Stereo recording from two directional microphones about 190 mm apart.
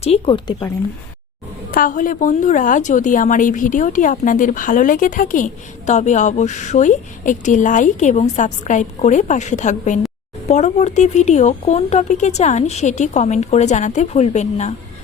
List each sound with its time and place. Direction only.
0.0 s speech: 30° left (ahead or behind)
1.7 s a woman's voice: 45° left (ahead or behind)